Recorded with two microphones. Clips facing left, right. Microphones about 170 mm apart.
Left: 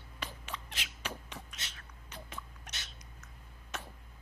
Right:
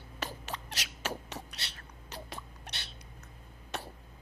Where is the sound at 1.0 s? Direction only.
40° right (ahead or behind).